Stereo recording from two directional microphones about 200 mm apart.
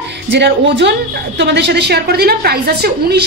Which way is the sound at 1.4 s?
60° right (ahead or behind).